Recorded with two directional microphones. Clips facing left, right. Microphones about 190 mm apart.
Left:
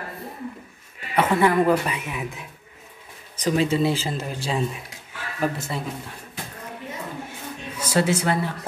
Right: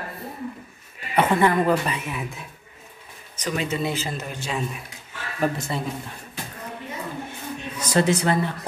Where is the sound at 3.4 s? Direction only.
30° left (ahead or behind).